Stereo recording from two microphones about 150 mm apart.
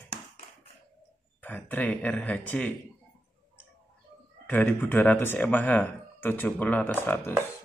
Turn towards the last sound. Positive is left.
turn(degrees=15)  # may be behind; listen again after turning